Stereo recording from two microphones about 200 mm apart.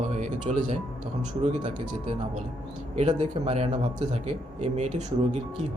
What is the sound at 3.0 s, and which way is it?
Speech, 30° right (ahead or behind).